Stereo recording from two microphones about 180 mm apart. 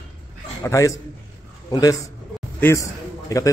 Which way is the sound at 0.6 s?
15° left (ahead or behind).